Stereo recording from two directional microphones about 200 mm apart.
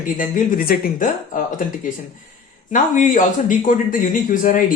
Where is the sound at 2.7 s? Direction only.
40° left (ahead or behind).